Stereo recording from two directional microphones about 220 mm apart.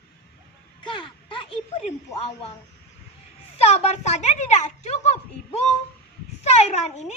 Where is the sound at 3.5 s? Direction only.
30° left (ahead or behind).